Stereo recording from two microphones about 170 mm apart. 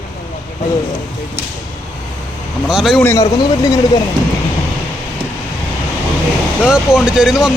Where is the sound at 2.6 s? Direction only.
5° right (ahead or behind).